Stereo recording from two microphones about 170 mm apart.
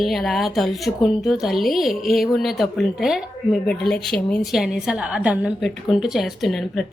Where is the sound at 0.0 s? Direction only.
Centre (ahead or behind).